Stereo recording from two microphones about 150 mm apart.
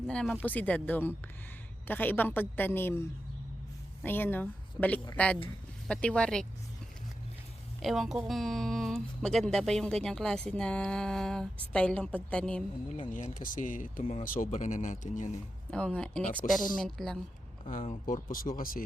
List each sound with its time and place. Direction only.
0.1 s a woman's voice: 5° left (ahead or behind)
7.8 s a woman's voice: centre (ahead or behind)
12.9 s speech: 55° left (ahead or behind)
14.6 s speech: 55° left (ahead or behind)
15.7 s a woman's voice: 5° left (ahead or behind)
17.7 s speech: 60° left (ahead or behind)